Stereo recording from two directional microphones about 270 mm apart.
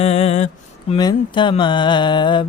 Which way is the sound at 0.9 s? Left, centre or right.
Centre.